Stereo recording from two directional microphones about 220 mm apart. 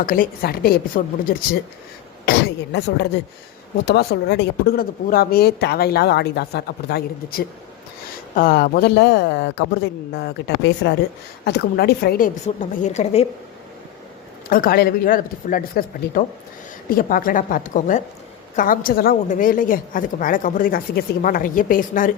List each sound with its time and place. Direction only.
0.0 s a woman's voice: 40° left (ahead or behind)
12.7 s a woman's voice: 35° left (ahead or behind)
14.5 s a woman's voice: 40° left (ahead or behind)